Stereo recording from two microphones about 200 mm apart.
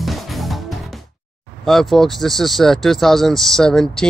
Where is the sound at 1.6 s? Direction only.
Centre (ahead or behind).